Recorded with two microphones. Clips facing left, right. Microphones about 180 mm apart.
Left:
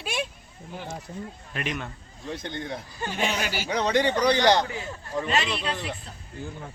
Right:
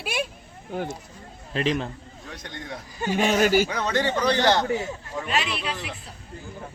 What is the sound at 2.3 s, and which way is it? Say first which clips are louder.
Speech: left 5 dB; 25° left (ahead or behind).